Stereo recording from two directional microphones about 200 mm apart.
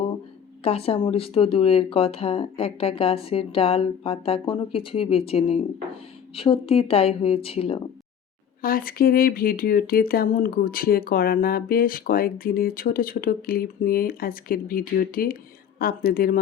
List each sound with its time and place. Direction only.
0.6 s speech: 30° left (ahead or behind)
8.6 s speech: 45° left (ahead or behind)